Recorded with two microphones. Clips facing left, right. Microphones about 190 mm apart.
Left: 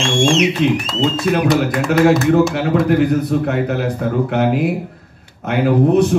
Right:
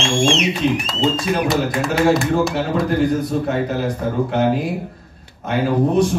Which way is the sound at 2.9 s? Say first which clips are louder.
Left 3 dB; 60° left (ahead or behind).